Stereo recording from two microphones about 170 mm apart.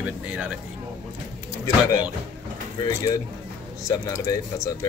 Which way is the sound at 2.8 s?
20° left (ahead or behind).